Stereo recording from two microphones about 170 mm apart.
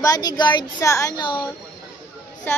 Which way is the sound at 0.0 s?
20° left (ahead or behind).